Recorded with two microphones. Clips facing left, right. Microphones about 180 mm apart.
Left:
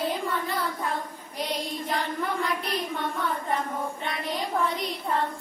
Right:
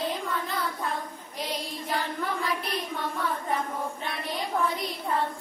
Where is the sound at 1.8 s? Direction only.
Centre (ahead or behind).